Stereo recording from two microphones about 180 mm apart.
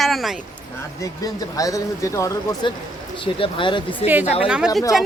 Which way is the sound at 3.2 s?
30° left (ahead or behind).